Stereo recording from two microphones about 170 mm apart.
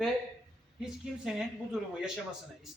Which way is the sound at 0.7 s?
5° right (ahead or behind).